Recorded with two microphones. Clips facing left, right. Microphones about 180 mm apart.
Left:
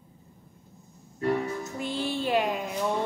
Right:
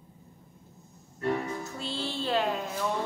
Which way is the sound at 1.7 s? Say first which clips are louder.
Left 4 dB; 15° left (ahead or behind).